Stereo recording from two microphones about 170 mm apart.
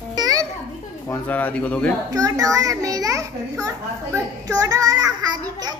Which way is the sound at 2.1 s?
20° right (ahead or behind).